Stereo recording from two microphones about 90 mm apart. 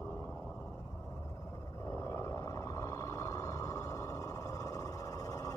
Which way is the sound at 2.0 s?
30° left (ahead or behind).